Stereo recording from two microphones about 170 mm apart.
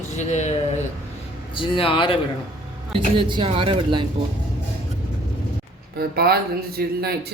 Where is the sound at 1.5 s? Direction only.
30° left (ahead or behind).